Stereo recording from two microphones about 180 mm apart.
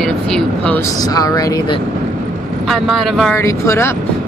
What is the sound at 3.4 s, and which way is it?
Speech, 15° left (ahead or behind).